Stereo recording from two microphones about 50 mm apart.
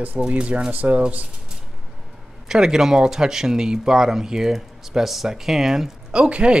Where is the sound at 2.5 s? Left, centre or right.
Centre.